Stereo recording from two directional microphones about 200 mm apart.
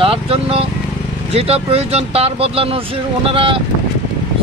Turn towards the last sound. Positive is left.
turn(degrees=-25)  # may be behind; listen again after turning